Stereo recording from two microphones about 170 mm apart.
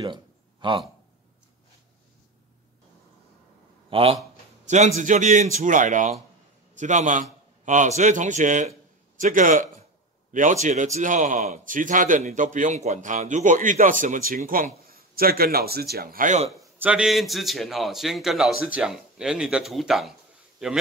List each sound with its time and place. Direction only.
0.0 s a sound: 30° right (ahead or behind)
3.9 s speech: 35° right (ahead or behind)
4.6 s a man's voice: 45° right (ahead or behind)
16.7 s a man's voice: 10° right (ahead or behind)